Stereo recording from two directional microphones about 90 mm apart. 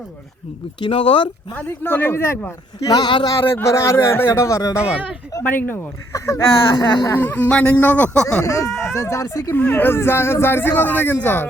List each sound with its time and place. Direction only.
0.8 s speech: 75° left (ahead or behind)
1.5 s speech: 20° left (ahead or behind)
2.8 s speech: 50° left (ahead or behind)
3.6 s speech: 30° left (ahead or behind)
5.4 s speech: 25° left (ahead or behind)
6.7 s speech: 50° left (ahead or behind)
7.1 s speech: 20° left (ahead or behind)
8.4 s speech: 35° left (ahead or behind)
9.6 s speech: 20° left (ahead or behind)